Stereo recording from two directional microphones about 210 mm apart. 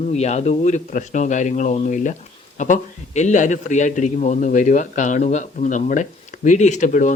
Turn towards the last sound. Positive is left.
turn(degrees=35)  # may be behind; listen again after turning